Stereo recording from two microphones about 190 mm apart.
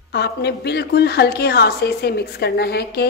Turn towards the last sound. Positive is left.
turn(degrees=55)  # may be behind; listen again after turning